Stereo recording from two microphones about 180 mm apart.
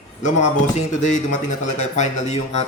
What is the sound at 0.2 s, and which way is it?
A man's voice, 45° left (ahead or behind).